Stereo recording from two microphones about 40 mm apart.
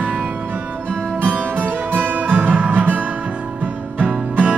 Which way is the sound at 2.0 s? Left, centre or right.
Right.